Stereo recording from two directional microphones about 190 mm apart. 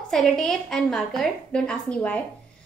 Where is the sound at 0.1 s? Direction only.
Centre (ahead or behind).